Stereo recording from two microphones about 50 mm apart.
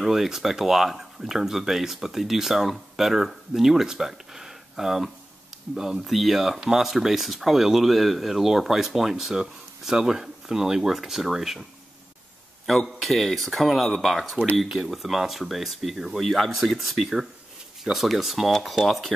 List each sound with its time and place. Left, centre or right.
0.0 s speech: centre
12.6 s speech: centre